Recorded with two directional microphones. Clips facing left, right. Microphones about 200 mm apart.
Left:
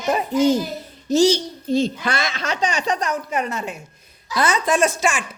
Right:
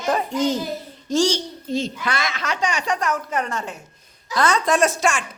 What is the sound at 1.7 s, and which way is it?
A woman's voice, 30° left (ahead or behind).